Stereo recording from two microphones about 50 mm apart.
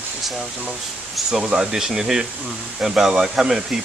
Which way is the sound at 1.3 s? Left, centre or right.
Centre.